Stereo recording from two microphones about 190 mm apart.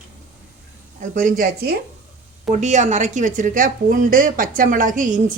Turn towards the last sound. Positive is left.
turn(degrees=-45)  # may be behind; listen again after turning